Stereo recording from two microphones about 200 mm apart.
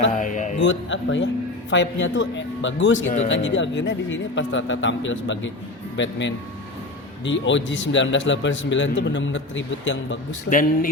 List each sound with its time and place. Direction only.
0.1 s mantra: 40° left (ahead or behind)
0.6 s a man's voice: 70° left (ahead or behind)